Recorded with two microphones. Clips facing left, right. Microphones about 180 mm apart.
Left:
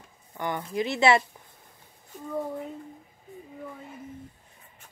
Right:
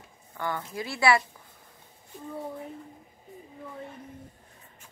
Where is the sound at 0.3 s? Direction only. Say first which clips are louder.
Left 2 dB; 20° left (ahead or behind).